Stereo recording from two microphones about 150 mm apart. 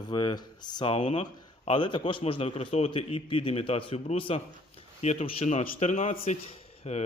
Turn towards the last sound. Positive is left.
turn(degrees=45)  # may be behind; listen again after turning